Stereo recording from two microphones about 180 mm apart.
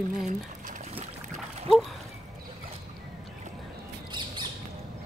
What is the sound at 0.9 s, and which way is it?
Boat, 35° right (ahead or behind).